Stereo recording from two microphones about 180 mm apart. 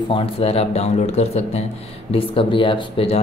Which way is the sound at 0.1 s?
35° left (ahead or behind).